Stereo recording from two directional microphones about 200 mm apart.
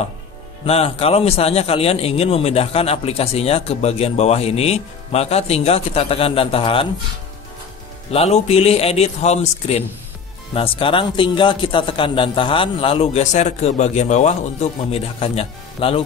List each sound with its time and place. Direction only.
0.7 s a man's voice: 30° left (ahead or behind)
8.1 s a man's voice: 30° left (ahead or behind)